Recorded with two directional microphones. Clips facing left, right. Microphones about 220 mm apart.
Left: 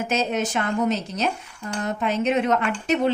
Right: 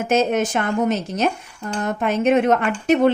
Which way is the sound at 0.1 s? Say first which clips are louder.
Right 8 dB; 50° right (ahead or behind).